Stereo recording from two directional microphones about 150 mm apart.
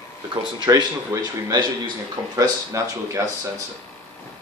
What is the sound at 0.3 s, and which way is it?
Speech, 30° right (ahead or behind).